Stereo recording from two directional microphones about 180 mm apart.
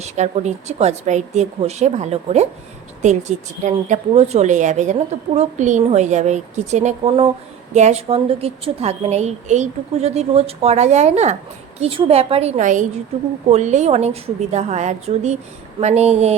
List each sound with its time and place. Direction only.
0.0 s a woman's voice: 40° right (ahead or behind)